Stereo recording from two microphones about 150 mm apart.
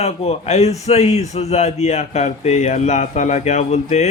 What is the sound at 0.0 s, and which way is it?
Speech, 45° left (ahead or behind).